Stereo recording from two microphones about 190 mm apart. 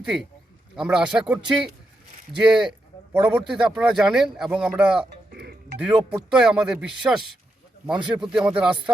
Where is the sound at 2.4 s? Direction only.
5° right (ahead or behind).